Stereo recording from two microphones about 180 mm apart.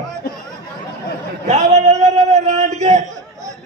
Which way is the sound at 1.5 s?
40° right (ahead or behind).